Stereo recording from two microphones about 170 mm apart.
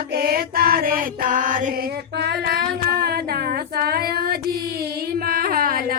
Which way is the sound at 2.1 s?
70° right (ahead or behind).